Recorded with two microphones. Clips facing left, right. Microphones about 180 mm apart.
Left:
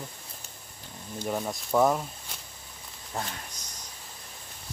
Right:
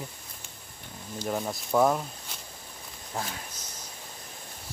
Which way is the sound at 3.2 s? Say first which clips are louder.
Even; centre (ahead or behind).